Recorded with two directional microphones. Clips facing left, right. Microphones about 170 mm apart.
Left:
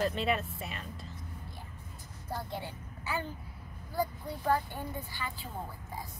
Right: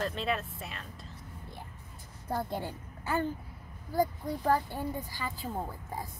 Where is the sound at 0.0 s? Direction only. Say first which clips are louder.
Left 2 dB; centre (ahead or behind).